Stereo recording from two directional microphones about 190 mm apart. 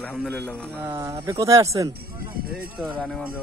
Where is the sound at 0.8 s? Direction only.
15° right (ahead or behind).